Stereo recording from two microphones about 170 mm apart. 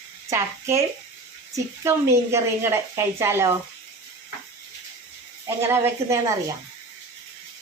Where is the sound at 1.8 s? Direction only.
15° right (ahead or behind).